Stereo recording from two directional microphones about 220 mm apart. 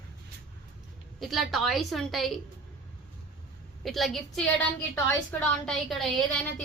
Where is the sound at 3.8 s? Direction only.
Centre (ahead or behind).